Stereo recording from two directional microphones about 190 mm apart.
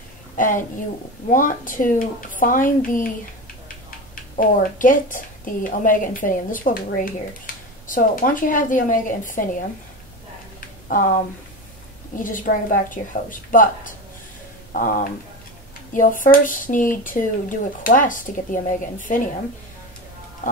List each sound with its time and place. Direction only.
0.4 s speech: 45° left (ahead or behind)
4.1 s speech: 45° left (ahead or behind)
12.2 s speech: 45° left (ahead or behind)